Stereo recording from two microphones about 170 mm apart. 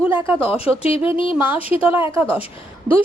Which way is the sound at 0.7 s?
35° left (ahead or behind).